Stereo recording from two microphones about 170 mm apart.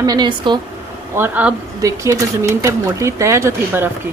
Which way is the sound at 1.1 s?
10° right (ahead or behind).